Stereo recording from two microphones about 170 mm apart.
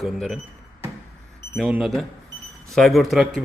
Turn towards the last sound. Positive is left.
turn(degrees=0)  # may be behind; listen again after turning